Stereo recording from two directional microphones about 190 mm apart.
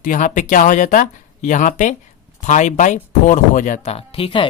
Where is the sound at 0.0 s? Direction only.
40° left (ahead or behind).